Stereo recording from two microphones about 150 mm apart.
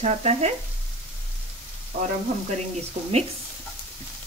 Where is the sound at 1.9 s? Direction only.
75° right (ahead or behind).